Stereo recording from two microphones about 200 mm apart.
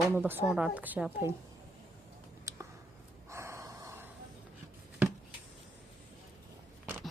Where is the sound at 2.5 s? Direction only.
15° right (ahead or behind).